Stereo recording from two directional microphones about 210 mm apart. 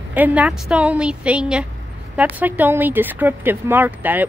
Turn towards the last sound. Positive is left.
turn(degrees=-10)  # may be behind; listen again after turning